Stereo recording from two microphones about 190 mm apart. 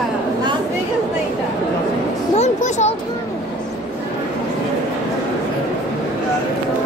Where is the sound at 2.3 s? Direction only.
35° left (ahead or behind).